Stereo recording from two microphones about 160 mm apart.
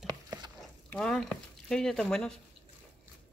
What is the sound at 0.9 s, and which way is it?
Speech, 5° left (ahead or behind).